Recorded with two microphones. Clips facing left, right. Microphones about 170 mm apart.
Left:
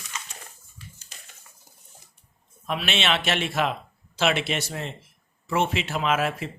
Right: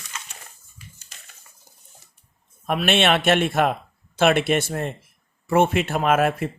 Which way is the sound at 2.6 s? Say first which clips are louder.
Right 7 dB; 55° right (ahead or behind).